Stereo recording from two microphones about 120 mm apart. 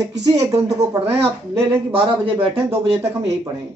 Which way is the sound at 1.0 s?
55° right (ahead or behind).